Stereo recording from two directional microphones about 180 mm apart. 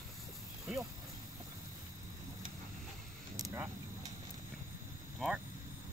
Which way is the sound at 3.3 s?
20° right (ahead or behind).